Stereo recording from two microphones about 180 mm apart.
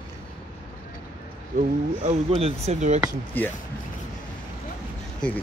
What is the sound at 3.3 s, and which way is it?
Speech, 10° left (ahead or behind).